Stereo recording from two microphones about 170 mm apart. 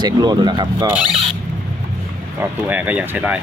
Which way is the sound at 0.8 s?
5° right (ahead or behind).